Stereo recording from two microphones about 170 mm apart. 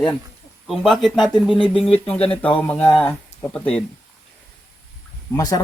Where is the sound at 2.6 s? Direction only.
10° left (ahead or behind).